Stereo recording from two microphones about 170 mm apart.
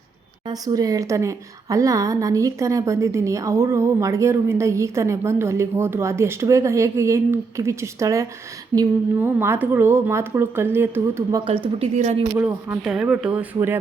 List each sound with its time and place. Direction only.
0.4 s a woman's voice: 20° right (ahead or behind)
11.8 s a woman's voice: 40° right (ahead or behind)
12.4 s a woman's voice: 10° right (ahead or behind)